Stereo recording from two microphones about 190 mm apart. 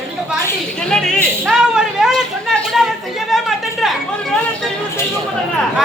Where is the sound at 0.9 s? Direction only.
5° left (ahead or behind).